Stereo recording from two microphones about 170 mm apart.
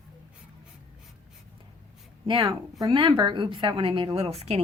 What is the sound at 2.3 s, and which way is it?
A woman's voice, 20° right (ahead or behind).